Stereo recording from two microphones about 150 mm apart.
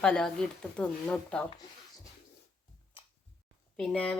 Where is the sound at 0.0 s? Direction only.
5° left (ahead or behind).